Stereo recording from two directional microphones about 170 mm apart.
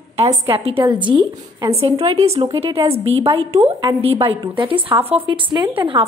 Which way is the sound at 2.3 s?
20° right (ahead or behind).